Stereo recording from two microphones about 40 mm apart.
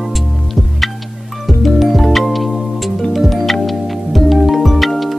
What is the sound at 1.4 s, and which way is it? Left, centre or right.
Music, centre.